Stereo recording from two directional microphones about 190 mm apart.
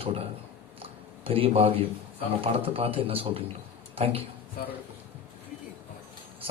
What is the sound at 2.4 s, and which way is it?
A man's voice, 30° right (ahead or behind).